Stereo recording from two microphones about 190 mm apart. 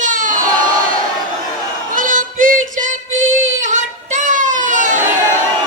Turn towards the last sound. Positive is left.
turn(degrees=-40)  # may be behind; listen again after turning